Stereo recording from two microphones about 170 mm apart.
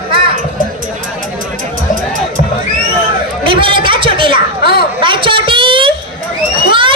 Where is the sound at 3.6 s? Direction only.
30° right (ahead or behind).